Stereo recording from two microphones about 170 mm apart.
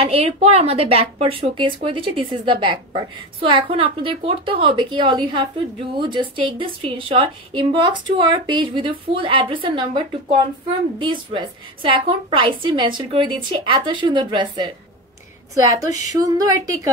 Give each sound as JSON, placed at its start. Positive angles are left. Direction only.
{"t": 0.0, "sound": "a woman's voice", "side_deg": -35}
{"t": 15.7, "sound": "a woman's voice", "side_deg": -20}